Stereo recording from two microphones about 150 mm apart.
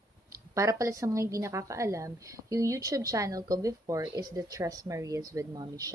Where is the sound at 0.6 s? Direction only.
20° right (ahead or behind).